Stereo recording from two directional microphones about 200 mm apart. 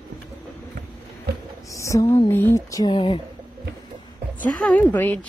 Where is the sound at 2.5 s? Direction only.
20° left (ahead or behind).